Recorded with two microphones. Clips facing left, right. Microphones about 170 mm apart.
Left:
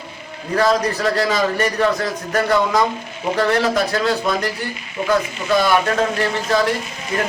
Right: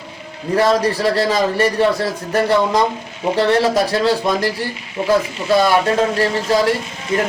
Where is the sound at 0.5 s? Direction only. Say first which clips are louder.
Right 2 dB; 30° right (ahead or behind).